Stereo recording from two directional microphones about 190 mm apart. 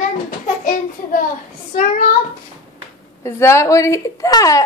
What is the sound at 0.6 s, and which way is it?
Speech, 45° left (ahead or behind).